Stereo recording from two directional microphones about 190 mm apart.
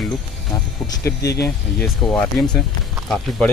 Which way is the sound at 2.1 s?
5° left (ahead or behind).